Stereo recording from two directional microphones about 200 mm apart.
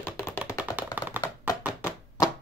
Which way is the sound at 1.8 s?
15° left (ahead or behind).